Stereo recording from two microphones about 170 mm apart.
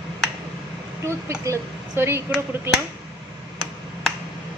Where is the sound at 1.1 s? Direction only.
15° right (ahead or behind).